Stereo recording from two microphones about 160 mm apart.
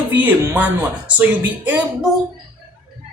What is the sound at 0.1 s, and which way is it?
Speech, 10° right (ahead or behind).